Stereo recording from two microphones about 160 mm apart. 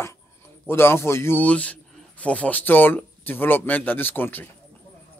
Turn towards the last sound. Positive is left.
turn(degrees=10)  # may be behind; listen again after turning